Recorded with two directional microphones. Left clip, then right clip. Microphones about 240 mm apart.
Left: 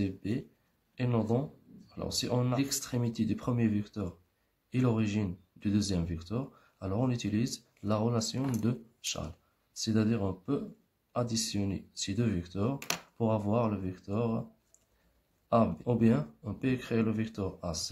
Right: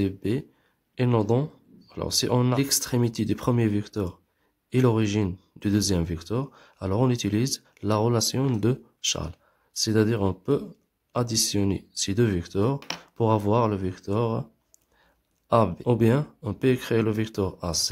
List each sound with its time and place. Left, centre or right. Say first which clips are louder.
0.0 s speech: right 8 dB; right
15.5 s speech: right 7 dB; right